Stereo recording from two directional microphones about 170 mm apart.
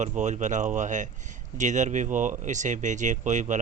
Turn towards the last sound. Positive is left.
turn(degrees=-45)  # may be behind; listen again after turning